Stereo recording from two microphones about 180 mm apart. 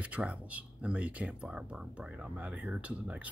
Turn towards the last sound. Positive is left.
turn(degrees=-5)  # may be behind; listen again after turning